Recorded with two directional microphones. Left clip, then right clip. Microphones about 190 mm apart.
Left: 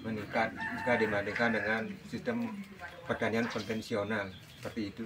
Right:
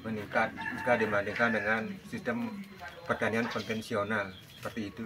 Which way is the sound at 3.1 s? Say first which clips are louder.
Right 2 dB; centre (ahead or behind).